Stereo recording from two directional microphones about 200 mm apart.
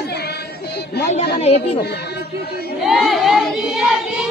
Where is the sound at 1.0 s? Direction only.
35° left (ahead or behind).